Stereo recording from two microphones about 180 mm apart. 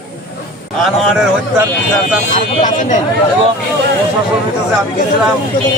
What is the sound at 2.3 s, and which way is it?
Speech, 45° left (ahead or behind).